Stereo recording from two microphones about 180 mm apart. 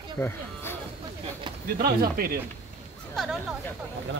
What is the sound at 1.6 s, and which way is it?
Speech, 55° right (ahead or behind).